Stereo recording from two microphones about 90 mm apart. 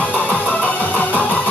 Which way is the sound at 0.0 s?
20° left (ahead or behind).